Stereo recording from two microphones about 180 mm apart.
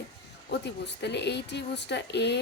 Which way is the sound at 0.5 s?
70° left (ahead or behind).